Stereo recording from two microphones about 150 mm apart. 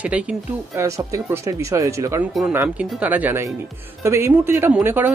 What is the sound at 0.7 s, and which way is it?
Speech, 20° right (ahead or behind).